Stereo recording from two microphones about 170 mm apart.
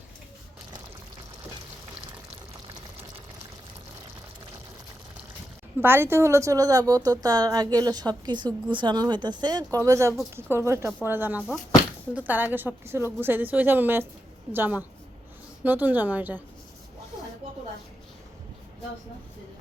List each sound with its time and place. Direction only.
5.8 s a woman's voice: 15° right (ahead or behind)